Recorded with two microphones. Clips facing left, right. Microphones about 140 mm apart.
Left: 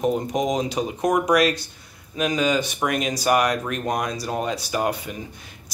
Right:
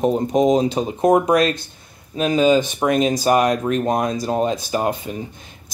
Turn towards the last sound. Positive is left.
turn(degrees=-25)  # may be behind; listen again after turning